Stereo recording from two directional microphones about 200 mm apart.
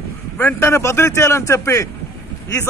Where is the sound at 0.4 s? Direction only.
10° left (ahead or behind).